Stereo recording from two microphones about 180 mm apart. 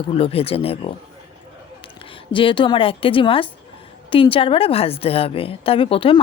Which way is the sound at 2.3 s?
30° left (ahead or behind).